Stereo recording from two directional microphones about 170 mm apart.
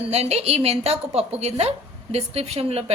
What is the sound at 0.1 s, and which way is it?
A woman's voice, 40° right (ahead or behind).